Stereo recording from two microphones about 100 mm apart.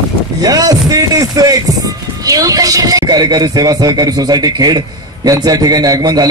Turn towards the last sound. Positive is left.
turn(degrees=-40)  # may be behind; listen again after turning